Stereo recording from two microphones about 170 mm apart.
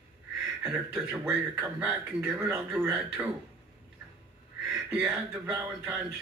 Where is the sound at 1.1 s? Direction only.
15° right (ahead or behind).